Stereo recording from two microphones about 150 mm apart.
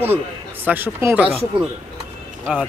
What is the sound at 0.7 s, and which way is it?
Speech, 15° right (ahead or behind).